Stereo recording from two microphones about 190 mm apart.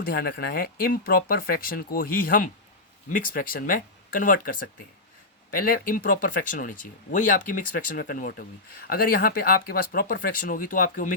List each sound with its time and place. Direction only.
0.0 s speech: 50° left (ahead or behind)